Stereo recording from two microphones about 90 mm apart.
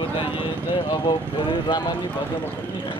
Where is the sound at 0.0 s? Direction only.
75° left (ahead or behind); by 2.0 s 60° left (ahead or behind).